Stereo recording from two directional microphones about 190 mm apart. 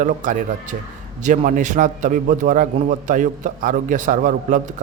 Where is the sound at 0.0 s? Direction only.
40° right (ahead or behind).